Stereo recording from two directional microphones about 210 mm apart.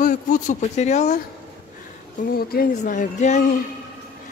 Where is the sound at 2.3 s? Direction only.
45° left (ahead or behind).